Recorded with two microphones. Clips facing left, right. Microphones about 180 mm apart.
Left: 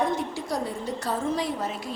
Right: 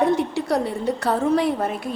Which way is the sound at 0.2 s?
65° right (ahead or behind).